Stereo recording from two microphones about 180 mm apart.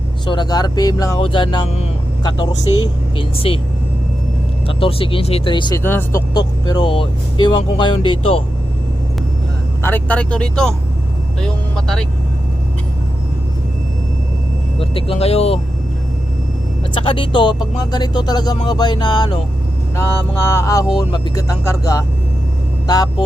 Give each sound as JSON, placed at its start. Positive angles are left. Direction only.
{"t": 0.3, "sound": "speech", "side_deg": 25}
{"t": 4.8, "sound": "speech", "side_deg": 30}
{"t": 5.8, "sound": "speech", "side_deg": 10}
{"t": 9.8, "sound": "speech", "side_deg": 10}
{"t": 14.8, "sound": "speech", "side_deg": 30}
{"t": 16.9, "sound": "speech", "side_deg": 30}